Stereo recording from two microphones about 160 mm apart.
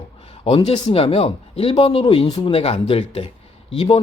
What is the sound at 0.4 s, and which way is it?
Speech, 35° left (ahead or behind).